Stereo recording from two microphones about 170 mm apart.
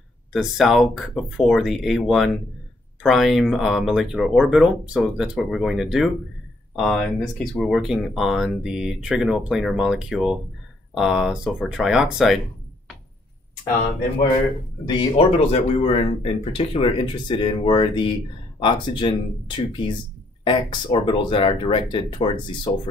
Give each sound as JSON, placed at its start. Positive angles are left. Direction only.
{"t": 0.3, "sound": "speech", "side_deg": 0}
{"t": 14.9, "sound": "speech", "side_deg": 30}